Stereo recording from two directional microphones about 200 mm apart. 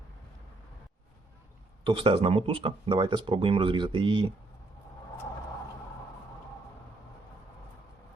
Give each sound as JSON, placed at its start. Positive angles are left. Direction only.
{"t": 1.8, "sound": "speech", "side_deg": -25}